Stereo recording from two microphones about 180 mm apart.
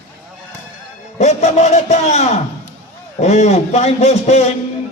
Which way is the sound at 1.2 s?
40° left (ahead or behind).